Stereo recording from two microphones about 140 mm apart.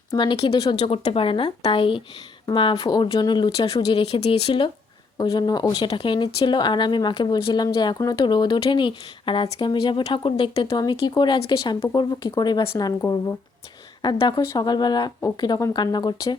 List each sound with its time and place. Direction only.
0.1 s speech: 35° left (ahead or behind)
14.0 s speech: 30° left (ahead or behind)